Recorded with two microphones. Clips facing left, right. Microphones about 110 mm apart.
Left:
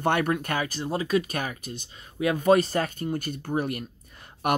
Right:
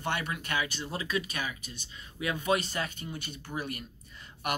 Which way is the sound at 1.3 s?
50° left (ahead or behind).